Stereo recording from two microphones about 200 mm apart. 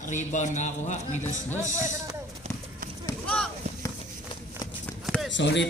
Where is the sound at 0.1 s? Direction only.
35° left (ahead or behind).